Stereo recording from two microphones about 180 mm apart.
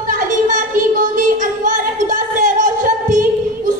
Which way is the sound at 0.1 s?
45° right (ahead or behind).